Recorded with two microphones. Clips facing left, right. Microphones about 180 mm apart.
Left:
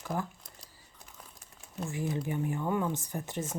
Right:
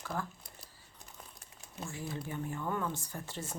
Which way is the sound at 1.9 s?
15° left (ahead or behind).